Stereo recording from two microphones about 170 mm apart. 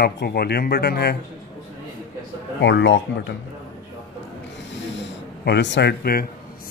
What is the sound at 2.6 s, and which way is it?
Speech, 90° left.